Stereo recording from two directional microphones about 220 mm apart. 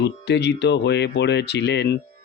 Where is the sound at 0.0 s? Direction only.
50° left (ahead or behind).